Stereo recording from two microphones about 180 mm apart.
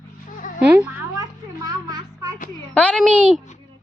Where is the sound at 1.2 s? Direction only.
20° right (ahead or behind).